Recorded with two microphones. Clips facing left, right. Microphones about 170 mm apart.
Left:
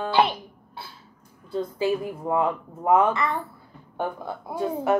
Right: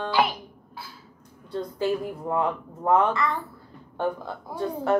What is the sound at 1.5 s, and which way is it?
A woman's voice, 5° left (ahead or behind).